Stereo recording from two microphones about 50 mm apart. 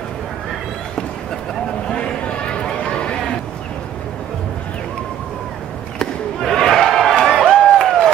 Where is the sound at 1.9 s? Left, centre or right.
Centre.